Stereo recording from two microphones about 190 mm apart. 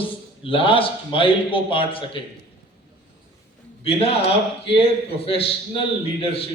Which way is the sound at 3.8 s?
30° left (ahead or behind).